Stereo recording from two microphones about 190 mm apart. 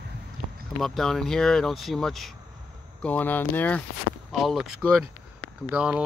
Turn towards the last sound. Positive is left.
turn(degrees=-5)  # may be behind; listen again after turning